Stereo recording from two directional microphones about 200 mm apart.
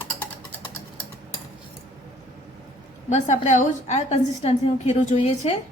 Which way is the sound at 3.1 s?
35° left (ahead or behind).